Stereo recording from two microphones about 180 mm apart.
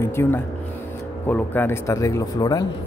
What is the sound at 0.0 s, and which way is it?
A man's voice, 15° left (ahead or behind).